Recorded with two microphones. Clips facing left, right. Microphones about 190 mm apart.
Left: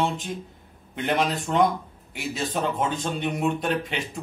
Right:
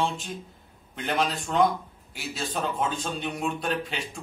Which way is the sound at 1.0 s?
10° left (ahead or behind).